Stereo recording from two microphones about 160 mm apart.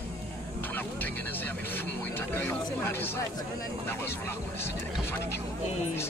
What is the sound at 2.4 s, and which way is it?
Speech, 15° left (ahead or behind).